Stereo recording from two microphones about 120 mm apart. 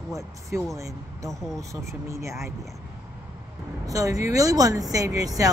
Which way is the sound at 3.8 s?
30° right (ahead or behind).